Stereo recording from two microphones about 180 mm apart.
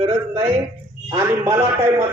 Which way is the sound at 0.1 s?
15° right (ahead or behind).